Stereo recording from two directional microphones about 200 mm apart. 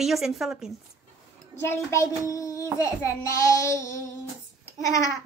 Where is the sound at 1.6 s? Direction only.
15° left (ahead or behind).